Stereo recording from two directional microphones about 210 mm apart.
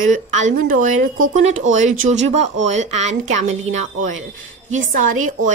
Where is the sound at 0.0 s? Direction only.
35° right (ahead or behind).